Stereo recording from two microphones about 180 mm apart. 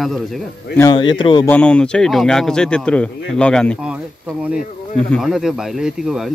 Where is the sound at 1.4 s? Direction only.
10° left (ahead or behind).